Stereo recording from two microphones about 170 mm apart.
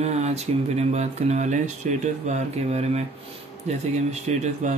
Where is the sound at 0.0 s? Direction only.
40° right (ahead or behind).